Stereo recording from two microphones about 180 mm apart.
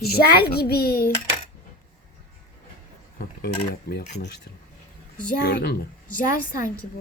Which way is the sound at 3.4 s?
65° left (ahead or behind).